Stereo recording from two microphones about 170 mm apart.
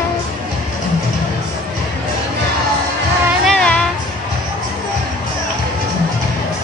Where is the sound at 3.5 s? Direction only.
5° left (ahead or behind).